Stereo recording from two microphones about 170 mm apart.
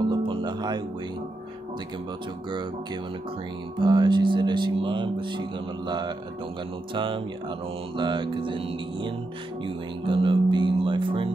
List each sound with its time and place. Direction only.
0.1 s music: 25° right (ahead or behind)
3.8 s speech: 25° right (ahead or behind)